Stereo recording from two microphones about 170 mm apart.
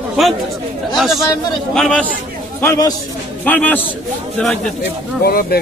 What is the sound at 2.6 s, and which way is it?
A man's voice, 20° left (ahead or behind).